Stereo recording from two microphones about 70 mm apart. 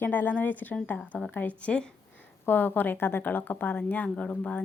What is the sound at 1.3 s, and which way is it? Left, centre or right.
Speech, left.